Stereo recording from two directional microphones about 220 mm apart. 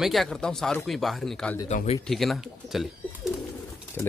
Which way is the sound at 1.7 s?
35° left (ahead or behind).